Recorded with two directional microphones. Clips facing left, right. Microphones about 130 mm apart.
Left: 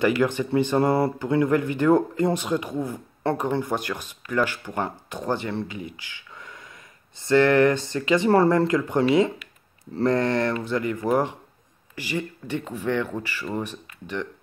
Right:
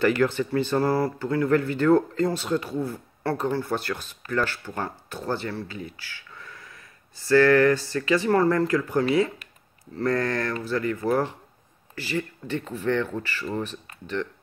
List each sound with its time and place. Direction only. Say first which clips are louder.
0.0 s speech: even; 15° left (ahead or behind)